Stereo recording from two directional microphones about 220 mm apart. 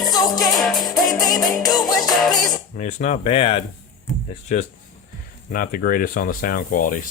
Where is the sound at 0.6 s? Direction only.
Centre (ahead or behind).